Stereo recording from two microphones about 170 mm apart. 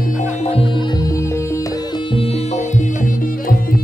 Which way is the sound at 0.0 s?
45° left (ahead or behind).